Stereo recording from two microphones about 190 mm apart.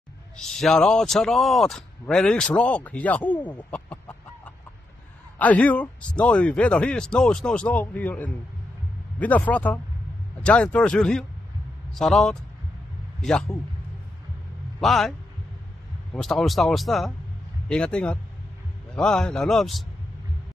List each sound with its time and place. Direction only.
0.4 s speech: 5° left (ahead or behind)
5.4 s a man's voice: 10° left (ahead or behind)
14.8 s speech: centre (ahead or behind)
16.2 s speech: centre (ahead or behind)